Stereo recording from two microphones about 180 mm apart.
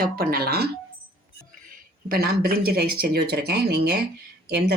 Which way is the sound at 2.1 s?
55° right (ahead or behind).